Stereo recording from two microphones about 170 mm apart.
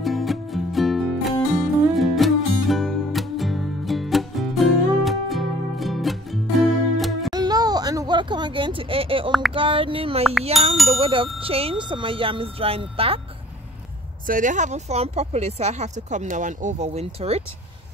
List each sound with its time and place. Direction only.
0.0 s music: centre (ahead or behind)
7.3 s a sound: 25° right (ahead or behind)
9.5 s speech: 30° right (ahead or behind)
14.2 s speech: 50° right (ahead or behind)